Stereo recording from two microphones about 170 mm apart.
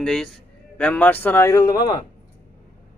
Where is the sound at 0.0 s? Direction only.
5° left (ahead or behind); by 2.0 s 20° left (ahead or behind).